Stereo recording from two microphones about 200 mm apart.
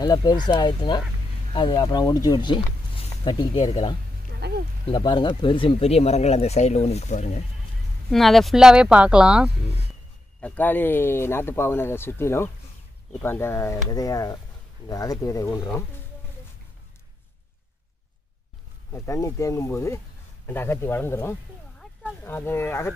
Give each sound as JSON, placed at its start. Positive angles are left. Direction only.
{"t": 0.0, "sound": "speech", "side_deg": 20}
{"t": 4.3, "sound": "a sound", "side_deg": -55}
{"t": 4.8, "sound": "speech", "side_deg": 20}
{"t": 8.1, "sound": "speech", "side_deg": 0}
{"t": 10.4, "sound": "speech", "side_deg": 10}
{"t": 18.9, "sound": "speech", "side_deg": 15}